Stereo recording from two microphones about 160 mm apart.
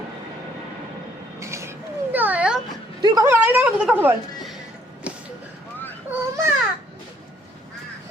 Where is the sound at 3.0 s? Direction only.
25° right (ahead or behind).